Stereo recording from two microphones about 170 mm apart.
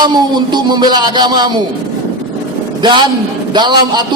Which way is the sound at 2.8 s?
25° right (ahead or behind).